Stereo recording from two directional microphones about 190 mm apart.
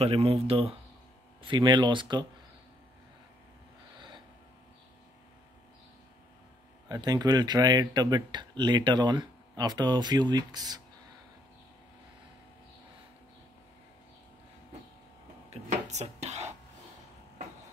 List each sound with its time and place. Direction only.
0.0 s speech: 30° right (ahead or behind)
6.9 s speech: 20° right (ahead or behind)
15.9 s dishes: 35° right (ahead or behind)